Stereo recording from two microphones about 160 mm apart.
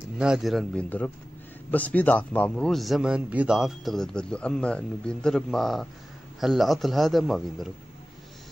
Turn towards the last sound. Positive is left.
turn(degrees=0)  # may be behind; listen again after turning